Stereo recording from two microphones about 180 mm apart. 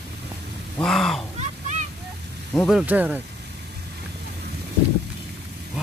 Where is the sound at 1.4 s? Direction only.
40° right (ahead or behind).